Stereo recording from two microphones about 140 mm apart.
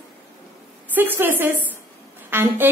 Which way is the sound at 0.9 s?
15° right (ahead or behind).